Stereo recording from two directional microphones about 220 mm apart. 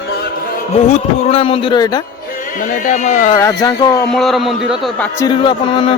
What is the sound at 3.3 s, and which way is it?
Speech, 15° left (ahead or behind).